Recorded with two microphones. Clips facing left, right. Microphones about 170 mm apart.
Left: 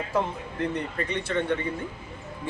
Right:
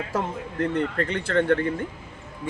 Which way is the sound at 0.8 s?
85° right.